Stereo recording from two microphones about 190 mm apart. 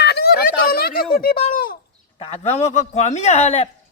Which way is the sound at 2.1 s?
30° left (ahead or behind).